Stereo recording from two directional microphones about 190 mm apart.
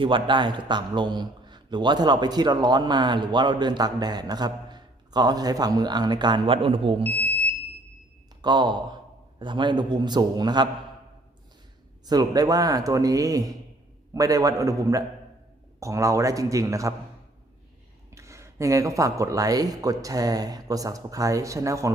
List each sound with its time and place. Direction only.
0.0 s a man's voice: 25° right (ahead or behind)
8.4 s a man's voice: 25° right (ahead or behind)
12.0 s a man's voice: 20° right (ahead or behind)
18.1 s speech: 15° right (ahead or behind)